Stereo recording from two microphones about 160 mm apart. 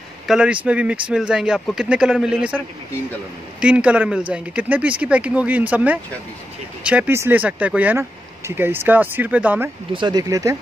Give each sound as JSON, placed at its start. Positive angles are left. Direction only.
{"t": 0.3, "sound": "speech", "side_deg": -5}
{"t": 3.6, "sound": "speech", "side_deg": -5}
{"t": 9.9, "sound": "speech", "side_deg": -25}